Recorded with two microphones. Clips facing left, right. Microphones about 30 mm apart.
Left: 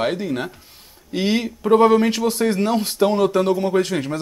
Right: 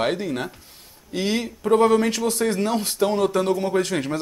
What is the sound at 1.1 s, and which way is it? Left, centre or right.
Speech, centre.